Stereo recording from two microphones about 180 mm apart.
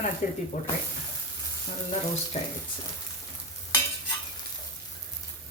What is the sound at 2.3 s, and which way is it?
Speech, 35° left (ahead or behind).